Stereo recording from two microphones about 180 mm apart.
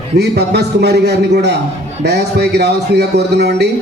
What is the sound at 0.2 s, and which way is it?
Speech, 65° right (ahead or behind).